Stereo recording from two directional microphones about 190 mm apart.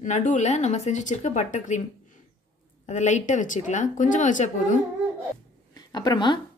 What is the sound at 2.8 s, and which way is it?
Speech, 40° left (ahead or behind).